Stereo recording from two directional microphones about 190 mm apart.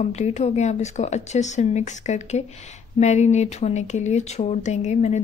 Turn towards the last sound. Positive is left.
turn(degrees=35)  # may be behind; listen again after turning